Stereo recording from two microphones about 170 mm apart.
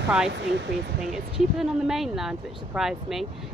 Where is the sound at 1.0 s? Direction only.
Centre (ahead or behind).